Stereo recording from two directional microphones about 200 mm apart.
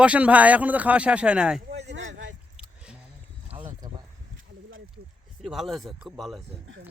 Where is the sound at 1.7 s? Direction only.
60° right (ahead or behind).